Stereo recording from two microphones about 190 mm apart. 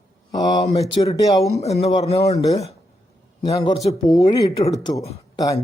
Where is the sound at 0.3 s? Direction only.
20° left (ahead or behind).